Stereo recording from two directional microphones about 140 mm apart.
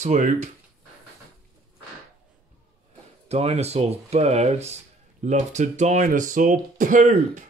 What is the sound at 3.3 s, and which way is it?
Speech, 50° right (ahead or behind).